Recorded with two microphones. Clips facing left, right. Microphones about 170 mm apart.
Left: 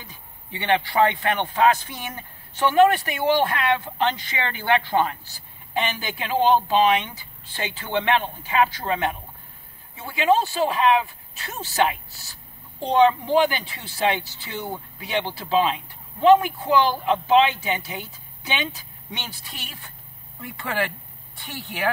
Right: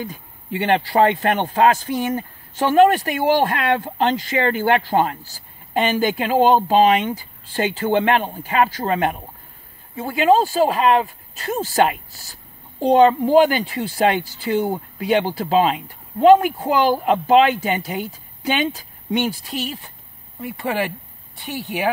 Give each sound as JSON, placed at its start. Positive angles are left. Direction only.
{"t": 0.6, "sound": "speech", "side_deg": -40}
{"t": 20.3, "sound": "speech", "side_deg": -15}